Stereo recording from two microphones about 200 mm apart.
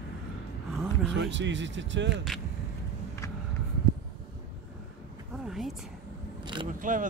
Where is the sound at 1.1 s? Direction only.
65° right (ahead or behind).